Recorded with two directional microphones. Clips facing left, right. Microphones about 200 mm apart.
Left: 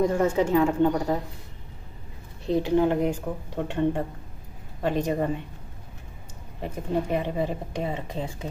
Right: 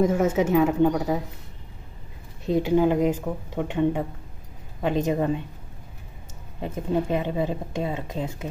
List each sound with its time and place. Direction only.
0.0 s a woman's voice: 5° right (ahead or behind)
2.5 s a woman's voice: 10° right (ahead or behind)
4.8 s speech: 20° right (ahead or behind)
5.1 s a woman's voice: 10° right (ahead or behind)
6.6 s a woman's voice: 15° right (ahead or behind)